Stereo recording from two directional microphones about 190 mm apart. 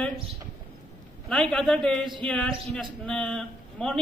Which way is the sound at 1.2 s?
5° left (ahead or behind).